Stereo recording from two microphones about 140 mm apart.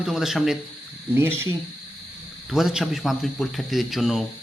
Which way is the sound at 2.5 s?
Centre (ahead or behind).